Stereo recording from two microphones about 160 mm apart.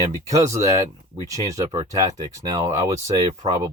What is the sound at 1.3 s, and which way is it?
Speech, 20° right (ahead or behind).